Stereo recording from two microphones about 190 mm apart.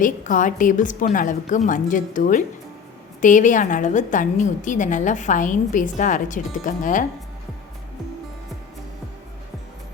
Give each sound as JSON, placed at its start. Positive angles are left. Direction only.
{"t": 0.0, "sound": "a woman's voice", "side_deg": 45}